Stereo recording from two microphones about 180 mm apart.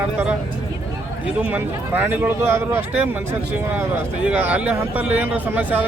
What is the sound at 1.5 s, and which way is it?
Speech, 10° right (ahead or behind).